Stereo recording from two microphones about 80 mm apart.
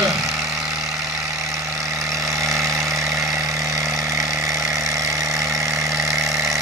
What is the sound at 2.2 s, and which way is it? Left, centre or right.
Vehicle, right.